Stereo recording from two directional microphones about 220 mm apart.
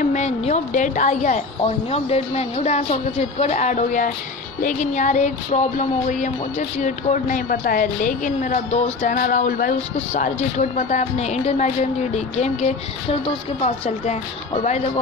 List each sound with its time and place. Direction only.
0.1 s speech: 30° left (ahead or behind)